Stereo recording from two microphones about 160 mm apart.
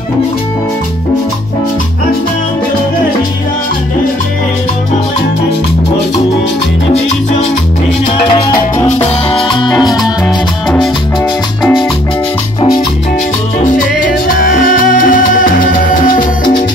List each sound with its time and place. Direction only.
9.3 s music: 30° left (ahead or behind)
14.4 s music: 55° left (ahead or behind)